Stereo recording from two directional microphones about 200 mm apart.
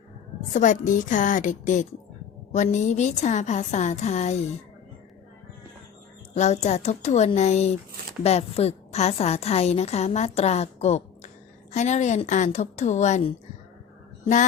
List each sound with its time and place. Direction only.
0.5 s a woman's voice: 40° left (ahead or behind)
6.3 s a woman's voice: 35° left (ahead or behind)